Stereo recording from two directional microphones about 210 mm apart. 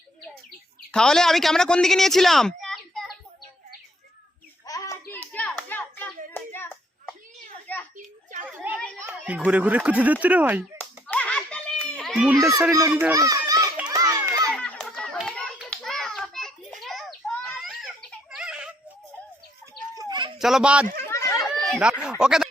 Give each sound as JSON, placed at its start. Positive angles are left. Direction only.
{"t": 0.9, "sound": "a woman's voice", "side_deg": 5}
{"t": 4.6, "sound": "hands", "side_deg": 15}
{"t": 7.9, "sound": "a sound", "side_deg": -40}
{"t": 8.7, "sound": "children playing", "side_deg": -10}
{"t": 9.0, "sound": "speech", "side_deg": -5}
{"t": 10.8, "sound": "children playing", "side_deg": 5}
{"t": 14.5, "sound": "hands", "side_deg": 5}
{"t": 18.3, "sound": "a sound", "side_deg": -5}
{"t": 20.0, "sound": "bird", "side_deg": -20}
{"t": 20.4, "sound": "speech", "side_deg": -5}
{"t": 21.1, "sound": "chatter", "side_deg": 15}
{"t": 21.3, "sound": "chatter", "side_deg": 0}
{"t": 22.2, "sound": "speech", "side_deg": -5}